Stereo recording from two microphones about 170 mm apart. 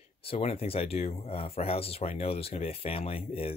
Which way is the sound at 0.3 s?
40° left (ahead or behind).